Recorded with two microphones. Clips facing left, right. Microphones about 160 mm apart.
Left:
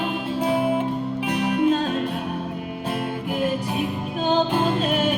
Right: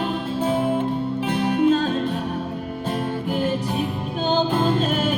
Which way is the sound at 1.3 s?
40° right (ahead or behind).